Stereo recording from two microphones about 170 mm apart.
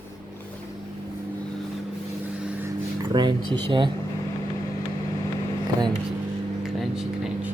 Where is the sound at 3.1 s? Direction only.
25° right (ahead or behind).